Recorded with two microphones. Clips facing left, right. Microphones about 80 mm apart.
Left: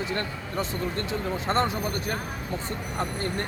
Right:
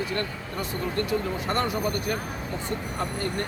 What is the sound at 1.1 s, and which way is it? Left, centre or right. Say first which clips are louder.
Speech: right 1 dB; left.